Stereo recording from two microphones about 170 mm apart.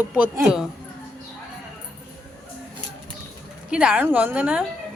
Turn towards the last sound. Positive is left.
turn(degrees=-10)  # may be behind; listen again after turning